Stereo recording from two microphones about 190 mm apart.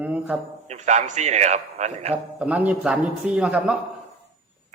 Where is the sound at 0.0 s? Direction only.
5° right (ahead or behind).